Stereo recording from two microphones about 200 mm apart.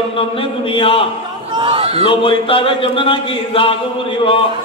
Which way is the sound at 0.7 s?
25° left (ahead or behind).